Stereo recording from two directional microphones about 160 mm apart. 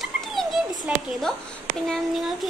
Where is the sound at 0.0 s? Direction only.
Centre (ahead or behind).